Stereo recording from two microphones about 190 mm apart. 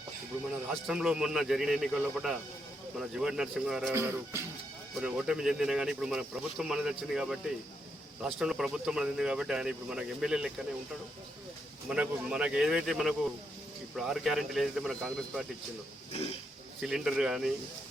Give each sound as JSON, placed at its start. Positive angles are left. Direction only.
{"t": 0.7, "sound": "speech", "side_deg": -5}
{"t": 3.9, "sound": "music", "side_deg": -15}
{"t": 4.9, "sound": "speech", "side_deg": -5}
{"t": 11.9, "sound": "speech", "side_deg": -5}
{"t": 16.1, "sound": "speech", "side_deg": 35}
{"t": 16.8, "sound": "speech", "side_deg": 0}